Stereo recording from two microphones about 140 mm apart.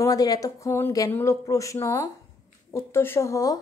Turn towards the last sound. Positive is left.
turn(degrees=25)  # may be behind; listen again after turning